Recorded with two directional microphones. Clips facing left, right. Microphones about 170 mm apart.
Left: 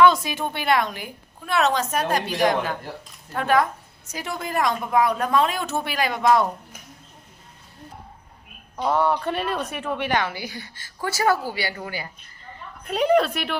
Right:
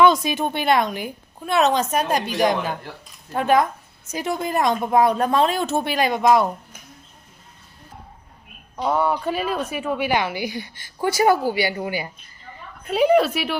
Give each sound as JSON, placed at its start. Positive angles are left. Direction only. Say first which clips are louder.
{"t": 0.0, "sound": "a woman's voice", "louder": "right 1 dB", "side_deg": -20}
{"t": 8.7, "sound": "speech", "louder": "even", "side_deg": 0}
{"t": 12.9, "sound": "a woman's voice", "louder": "right 3 dB", "side_deg": -5}